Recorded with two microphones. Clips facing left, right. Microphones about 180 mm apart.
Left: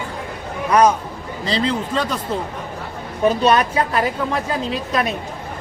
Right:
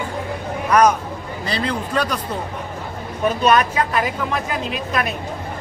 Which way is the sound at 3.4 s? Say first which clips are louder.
Even; 30° left (ahead or behind).